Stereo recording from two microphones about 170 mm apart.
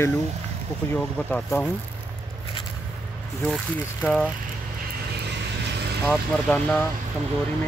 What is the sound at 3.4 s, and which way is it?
Speech, 5° left (ahead or behind).